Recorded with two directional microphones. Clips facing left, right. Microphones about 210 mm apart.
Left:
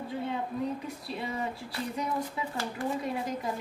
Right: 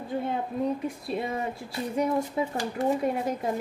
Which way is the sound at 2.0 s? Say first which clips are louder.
Right 9 dB; 45° right (ahead or behind).